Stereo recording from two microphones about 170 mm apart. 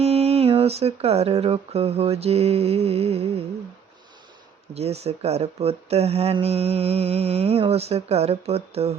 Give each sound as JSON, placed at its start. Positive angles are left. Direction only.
{"t": 0.0, "sound": "speech", "side_deg": -40}
{"t": 4.7, "sound": "speech", "side_deg": -40}